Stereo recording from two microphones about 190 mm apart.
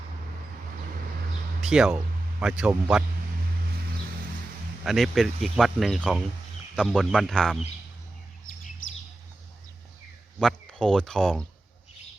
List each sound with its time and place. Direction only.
1.6 s speech: 5° right (ahead or behind)
4.9 s speech: centre (ahead or behind)
8.8 s chirp: 90° left
10.4 s speech: 5° left (ahead or behind)